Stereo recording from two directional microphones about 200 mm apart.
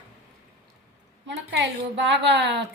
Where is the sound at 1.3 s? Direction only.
65° right (ahead or behind).